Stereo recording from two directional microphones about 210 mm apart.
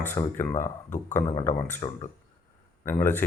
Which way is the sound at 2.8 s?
10° left (ahead or behind).